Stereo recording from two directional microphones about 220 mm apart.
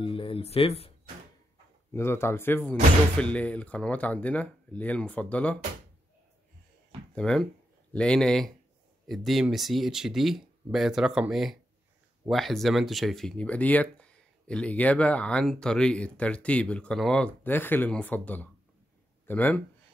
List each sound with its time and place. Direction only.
0.0 s a sound: 25° left (ahead or behind)
2.0 s speech: 10° left (ahead or behind)
7.2 s speech: 5° left (ahead or behind)